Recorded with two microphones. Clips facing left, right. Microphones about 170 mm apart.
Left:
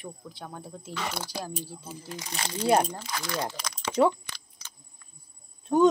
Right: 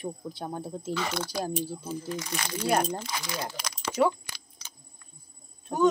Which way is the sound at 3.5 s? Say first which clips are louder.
Even; 5° right (ahead or behind).